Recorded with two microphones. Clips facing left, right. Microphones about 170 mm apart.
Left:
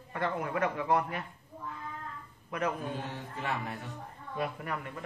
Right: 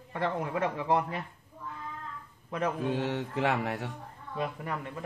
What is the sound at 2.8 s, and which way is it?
Speech, 75° right (ahead or behind).